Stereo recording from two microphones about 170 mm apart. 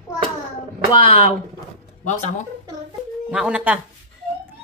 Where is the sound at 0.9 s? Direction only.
30° left (ahead or behind).